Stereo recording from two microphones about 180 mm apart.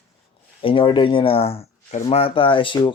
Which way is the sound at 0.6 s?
30° left (ahead or behind).